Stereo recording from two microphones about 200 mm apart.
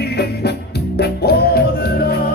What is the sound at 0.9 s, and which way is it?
Music, 55° left (ahead or behind).